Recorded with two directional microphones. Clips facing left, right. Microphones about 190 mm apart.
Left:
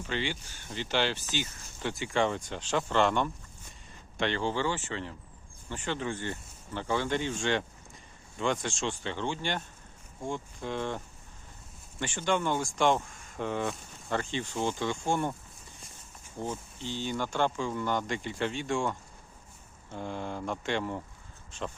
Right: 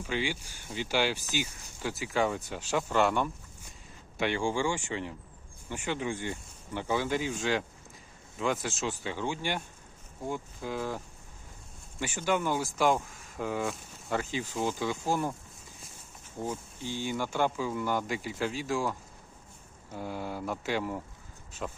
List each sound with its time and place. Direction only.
0.0 s speech: 10° right (ahead or behind)
16.4 s speech: 10° right (ahead or behind)